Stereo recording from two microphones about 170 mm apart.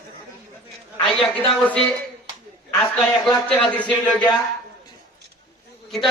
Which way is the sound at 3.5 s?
10° left (ahead or behind).